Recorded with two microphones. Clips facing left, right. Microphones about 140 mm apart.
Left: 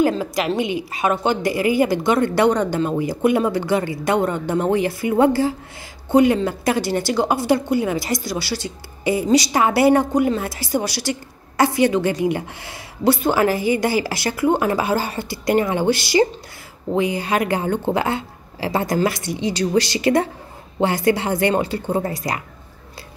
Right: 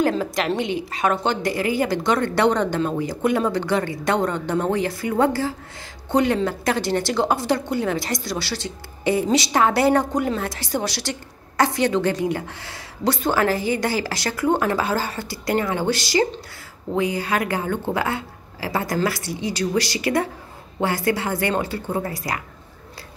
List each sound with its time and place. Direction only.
0.0 s a woman's voice: 5° left (ahead or behind); by 22.4 s 20° left (ahead or behind)